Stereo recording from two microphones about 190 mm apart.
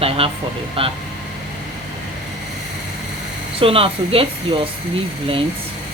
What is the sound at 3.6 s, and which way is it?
Speech, 30° right (ahead or behind).